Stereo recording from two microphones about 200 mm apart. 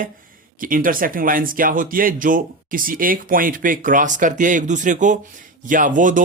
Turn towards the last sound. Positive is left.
turn(degrees=-40)  # may be behind; listen again after turning